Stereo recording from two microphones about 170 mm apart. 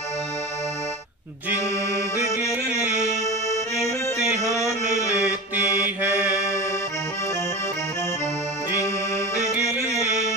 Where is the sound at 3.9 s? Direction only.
15° left (ahead or behind).